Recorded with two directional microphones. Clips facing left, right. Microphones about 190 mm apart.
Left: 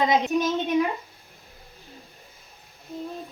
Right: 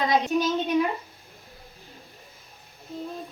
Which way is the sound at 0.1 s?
20° left (ahead or behind).